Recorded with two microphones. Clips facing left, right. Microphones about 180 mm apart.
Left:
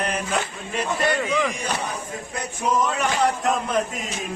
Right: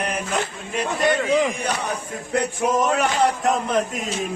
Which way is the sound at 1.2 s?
25° right (ahead or behind).